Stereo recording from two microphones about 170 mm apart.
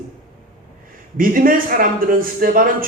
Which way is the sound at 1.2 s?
55° right (ahead or behind).